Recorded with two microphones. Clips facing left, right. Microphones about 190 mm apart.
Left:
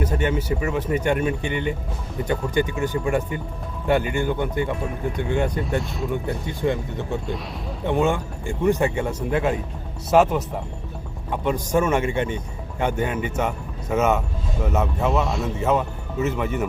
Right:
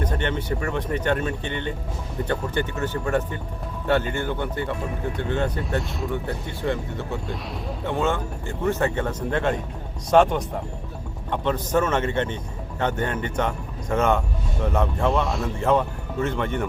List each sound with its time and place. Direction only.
0.0 s speech: 10° left (ahead or behind)